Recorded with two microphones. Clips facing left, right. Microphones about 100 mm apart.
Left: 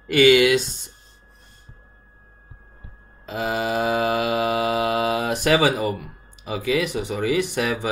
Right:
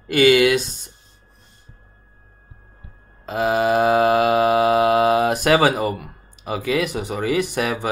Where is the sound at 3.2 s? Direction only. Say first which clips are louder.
Right 6 dB; 55° right (ahead or behind).